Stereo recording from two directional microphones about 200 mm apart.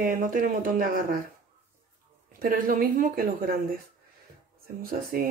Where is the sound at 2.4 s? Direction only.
45° right (ahead or behind).